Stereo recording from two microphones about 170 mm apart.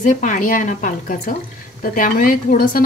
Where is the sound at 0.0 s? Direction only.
50° left (ahead or behind).